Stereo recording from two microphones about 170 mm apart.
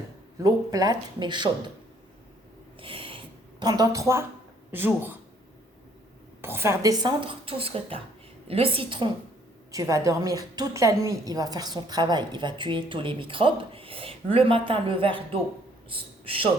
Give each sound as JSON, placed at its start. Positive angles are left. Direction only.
{"t": 0.3, "sound": "a woman's voice", "side_deg": -20}
{"t": 2.8, "sound": "a sound", "side_deg": -30}
{"t": 4.7, "sound": "speech", "side_deg": -10}
{"t": 6.4, "sound": "speech", "side_deg": -15}
{"t": 9.7, "sound": "a woman's voice", "side_deg": -20}